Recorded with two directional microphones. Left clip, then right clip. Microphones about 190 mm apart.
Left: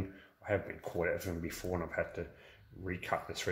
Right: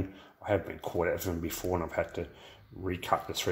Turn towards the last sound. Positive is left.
turn(degrees=-25)  # may be behind; listen again after turning